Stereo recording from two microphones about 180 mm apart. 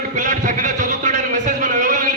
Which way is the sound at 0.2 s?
45° right (ahead or behind).